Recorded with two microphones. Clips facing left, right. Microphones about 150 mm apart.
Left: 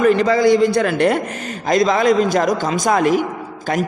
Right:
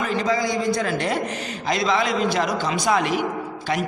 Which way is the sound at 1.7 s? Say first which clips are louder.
Left 7 dB; 45° left (ahead or behind).